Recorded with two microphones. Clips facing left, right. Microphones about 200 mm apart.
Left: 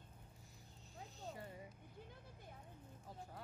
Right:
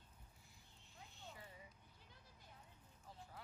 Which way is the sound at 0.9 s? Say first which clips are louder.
Left 8 dB; 40° left (ahead or behind).